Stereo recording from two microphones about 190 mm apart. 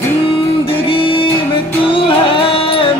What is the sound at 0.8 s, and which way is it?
Music, 25° left (ahead or behind).